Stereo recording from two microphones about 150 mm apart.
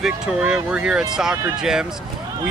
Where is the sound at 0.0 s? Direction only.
5° right (ahead or behind).